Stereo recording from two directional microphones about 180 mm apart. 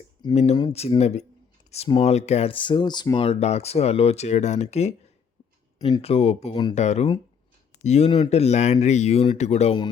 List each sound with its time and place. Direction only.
0.3 s speech: 35° left (ahead or behind)
6.0 s speech: 35° left (ahead or behind)
6.7 s speech: 40° left (ahead or behind)